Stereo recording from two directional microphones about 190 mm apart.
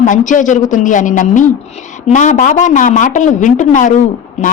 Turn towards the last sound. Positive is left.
turn(degrees=40)  # may be behind; listen again after turning